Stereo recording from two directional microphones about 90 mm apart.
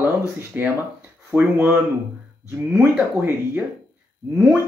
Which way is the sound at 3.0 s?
25° right (ahead or behind).